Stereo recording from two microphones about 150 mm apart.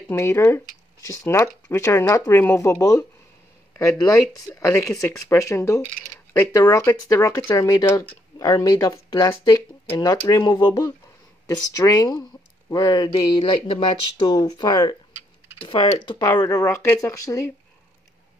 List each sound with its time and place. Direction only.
0.1 s speech: 15° left (ahead or behind)